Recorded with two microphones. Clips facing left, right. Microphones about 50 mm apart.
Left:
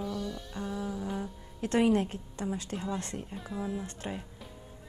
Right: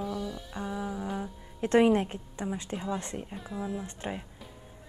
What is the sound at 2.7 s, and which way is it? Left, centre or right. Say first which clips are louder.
Music: right 1 dB; centre.